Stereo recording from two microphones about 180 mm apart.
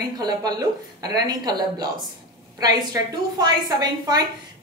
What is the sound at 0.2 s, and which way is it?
A woman's voice, 20° right (ahead or behind).